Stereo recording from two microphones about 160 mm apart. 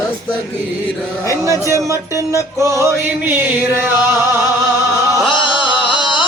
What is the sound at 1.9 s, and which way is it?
Music, 20° right (ahead or behind).